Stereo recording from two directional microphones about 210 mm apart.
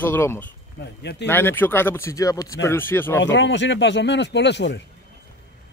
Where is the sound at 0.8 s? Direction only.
50° left (ahead or behind).